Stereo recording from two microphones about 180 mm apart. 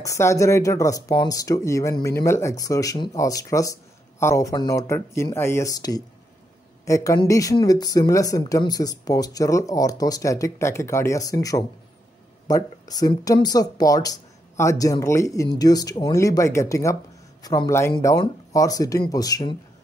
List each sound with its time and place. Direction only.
0.0 s speech: 15° left (ahead or behind)